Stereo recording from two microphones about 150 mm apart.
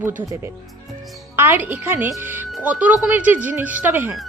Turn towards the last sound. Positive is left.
turn(degrees=-15)  # may be behind; listen again after turning